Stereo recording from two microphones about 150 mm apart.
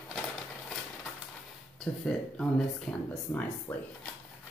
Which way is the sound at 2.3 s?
5° left (ahead or behind).